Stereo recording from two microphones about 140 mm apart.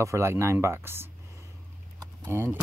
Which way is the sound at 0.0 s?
20° right (ahead or behind).